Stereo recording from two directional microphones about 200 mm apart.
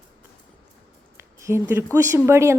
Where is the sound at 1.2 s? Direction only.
15° right (ahead or behind).